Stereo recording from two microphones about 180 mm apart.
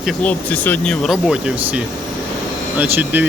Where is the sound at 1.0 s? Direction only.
Centre (ahead or behind).